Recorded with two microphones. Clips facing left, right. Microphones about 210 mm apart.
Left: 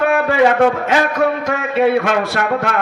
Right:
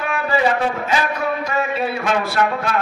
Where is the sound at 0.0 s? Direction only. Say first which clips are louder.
Left 6 dB; 70° left (ahead or behind).